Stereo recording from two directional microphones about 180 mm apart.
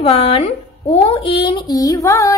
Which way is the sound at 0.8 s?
35° left (ahead or behind).